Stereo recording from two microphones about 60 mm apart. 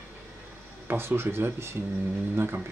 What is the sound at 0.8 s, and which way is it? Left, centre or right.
Speech, right.